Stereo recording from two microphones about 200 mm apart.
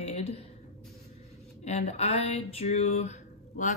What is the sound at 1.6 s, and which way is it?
Speech, 35° left (ahead or behind).